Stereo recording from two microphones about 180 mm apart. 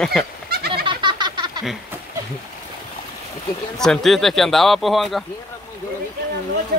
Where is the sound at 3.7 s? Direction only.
5° left (ahead or behind).